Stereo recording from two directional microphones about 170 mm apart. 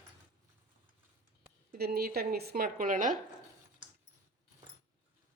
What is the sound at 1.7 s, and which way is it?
Speech, 65° right (ahead or behind).